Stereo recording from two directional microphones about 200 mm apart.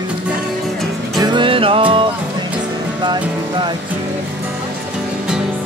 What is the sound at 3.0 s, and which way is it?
Speech, 20° right (ahead or behind).